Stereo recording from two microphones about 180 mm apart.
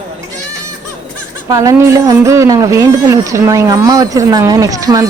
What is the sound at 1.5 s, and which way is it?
A woman's voice, 15° right (ahead or behind).